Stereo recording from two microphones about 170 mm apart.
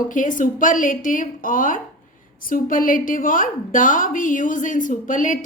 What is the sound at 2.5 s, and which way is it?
A woman's voice, 55° left (ahead or behind).